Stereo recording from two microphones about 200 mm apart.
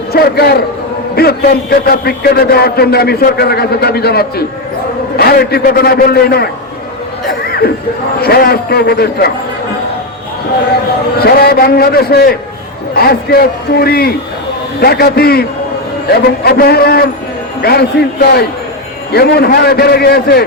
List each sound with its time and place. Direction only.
0.1 s a man's voice: 50° left (ahead or behind)
8.2 s a man's voice: 50° left (ahead or behind)
11.2 s a man's voice: 50° left (ahead or behind)